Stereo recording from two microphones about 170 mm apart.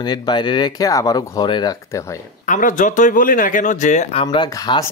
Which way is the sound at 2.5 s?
50° left (ahead or behind).